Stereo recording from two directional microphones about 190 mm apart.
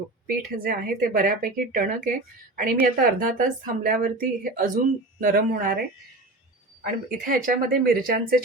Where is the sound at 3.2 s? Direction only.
45° right (ahead or behind).